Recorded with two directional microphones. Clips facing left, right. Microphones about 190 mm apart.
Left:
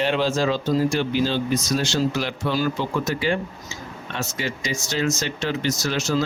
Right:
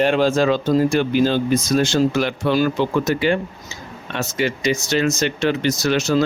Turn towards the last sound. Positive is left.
turn(degrees=-65)  # may be behind; listen again after turning